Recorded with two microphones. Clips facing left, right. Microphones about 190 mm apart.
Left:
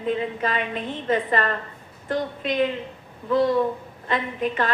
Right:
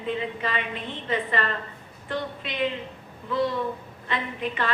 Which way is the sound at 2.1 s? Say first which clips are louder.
Left 5 dB; 45° left (ahead or behind).